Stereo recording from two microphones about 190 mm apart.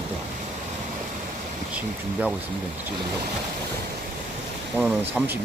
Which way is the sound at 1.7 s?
5° right (ahead or behind).